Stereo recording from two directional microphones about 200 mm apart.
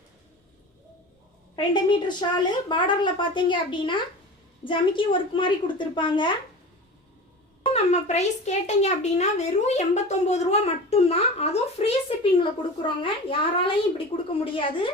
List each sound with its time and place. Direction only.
1.5 s a woman's voice: 20° left (ahead or behind)
7.6 s a woman's voice: 35° left (ahead or behind)